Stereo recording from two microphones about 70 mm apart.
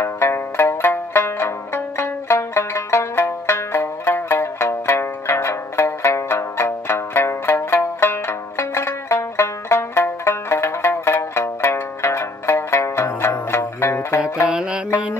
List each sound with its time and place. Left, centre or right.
0.0 s music: left
14.5 s music: centre